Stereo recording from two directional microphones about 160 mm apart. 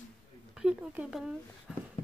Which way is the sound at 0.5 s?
5° right (ahead or behind).